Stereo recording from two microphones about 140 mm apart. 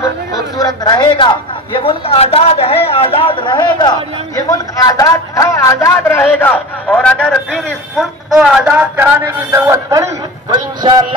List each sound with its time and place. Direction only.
0.8 s a man's voice: 35° left (ahead or behind); by 11.1 s 30° right (ahead or behind)